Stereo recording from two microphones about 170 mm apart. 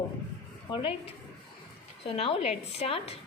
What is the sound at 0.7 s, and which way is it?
A woman's voice, 35° left (ahead or behind).